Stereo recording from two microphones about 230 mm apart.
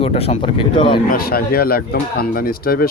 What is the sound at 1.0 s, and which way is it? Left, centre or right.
Speech, left.